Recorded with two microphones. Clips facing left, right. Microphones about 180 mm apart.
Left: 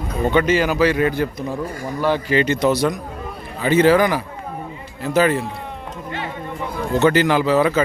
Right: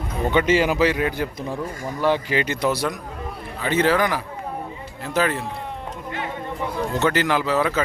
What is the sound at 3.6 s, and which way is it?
Speech, 5° left (ahead or behind).